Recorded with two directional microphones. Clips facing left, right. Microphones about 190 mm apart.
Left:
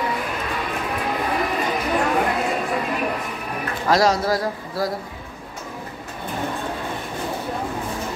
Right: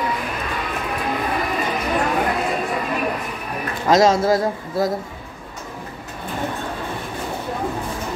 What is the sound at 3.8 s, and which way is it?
Speech, 20° right (ahead or behind).